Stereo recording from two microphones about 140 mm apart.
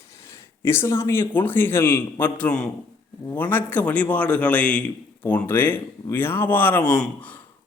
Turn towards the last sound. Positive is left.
turn(degrees=5)  # may be behind; listen again after turning